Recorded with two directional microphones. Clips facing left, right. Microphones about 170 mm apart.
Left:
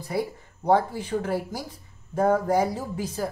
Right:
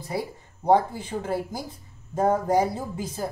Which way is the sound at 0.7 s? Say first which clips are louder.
Right 1 dB; 20° right (ahead or behind).